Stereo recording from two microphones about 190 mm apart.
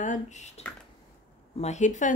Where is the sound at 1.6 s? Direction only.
40° left (ahead or behind).